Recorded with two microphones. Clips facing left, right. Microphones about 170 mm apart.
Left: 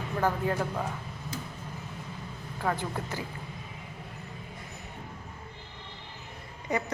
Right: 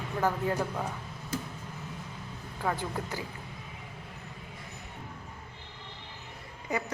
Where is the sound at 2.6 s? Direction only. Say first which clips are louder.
Left 1 dB; 5° right (ahead or behind).